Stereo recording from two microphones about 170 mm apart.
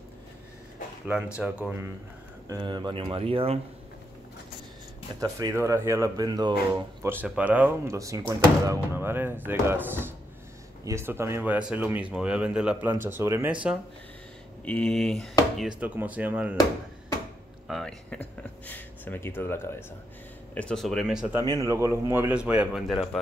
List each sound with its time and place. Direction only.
1.0 s speech: 5° right (ahead or behind)
2.4 s speech: 25° right (ahead or behind)
5.2 s speech: 20° right (ahead or behind)
14.6 s speech: 5° left (ahead or behind)
17.6 s speech: 5° left (ahead or behind)
21.4 s speech: 20° right (ahead or behind); by 23.0 s centre (ahead or behind)